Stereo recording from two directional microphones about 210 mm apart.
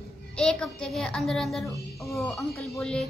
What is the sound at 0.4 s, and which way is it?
A child's voice, 5° left (ahead or behind).